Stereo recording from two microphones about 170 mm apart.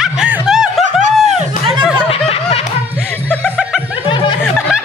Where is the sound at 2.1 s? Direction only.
35° left (ahead or behind).